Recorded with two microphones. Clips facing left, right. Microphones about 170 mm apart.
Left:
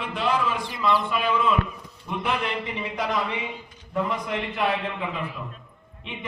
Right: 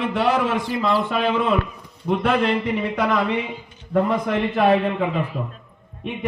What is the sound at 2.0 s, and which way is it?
A man's voice, 60° right (ahead or behind).